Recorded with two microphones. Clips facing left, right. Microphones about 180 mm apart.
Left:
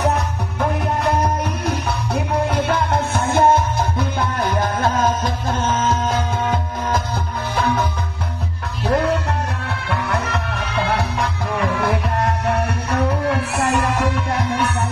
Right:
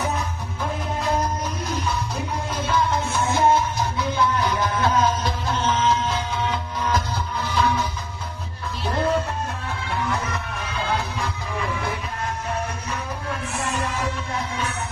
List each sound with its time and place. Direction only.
0.0 s music: 70° left (ahead or behind)
8.8 s music: 75° left (ahead or behind)